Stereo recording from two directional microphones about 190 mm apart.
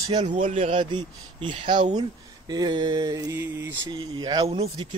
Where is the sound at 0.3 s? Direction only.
40° right (ahead or behind).